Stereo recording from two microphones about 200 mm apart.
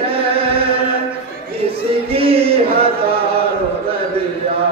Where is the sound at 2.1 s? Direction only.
30° right (ahead or behind).